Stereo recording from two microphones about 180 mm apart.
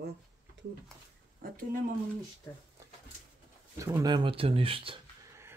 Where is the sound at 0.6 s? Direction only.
80° right.